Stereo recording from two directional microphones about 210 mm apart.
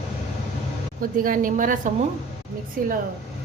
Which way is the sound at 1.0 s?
40° right (ahead or behind).